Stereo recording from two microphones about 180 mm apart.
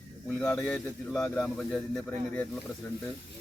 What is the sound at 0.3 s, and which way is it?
Speech, 5° left (ahead or behind).